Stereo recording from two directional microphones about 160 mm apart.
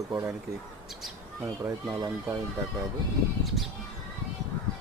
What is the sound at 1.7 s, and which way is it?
Speech, 20° right (ahead or behind).